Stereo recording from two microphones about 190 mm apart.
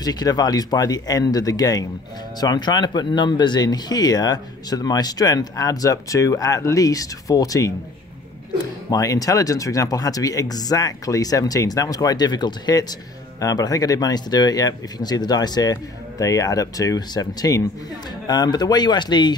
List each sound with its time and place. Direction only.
0.0 s speech: 20° left (ahead or behind)
8.9 s speech: 20° left (ahead or behind)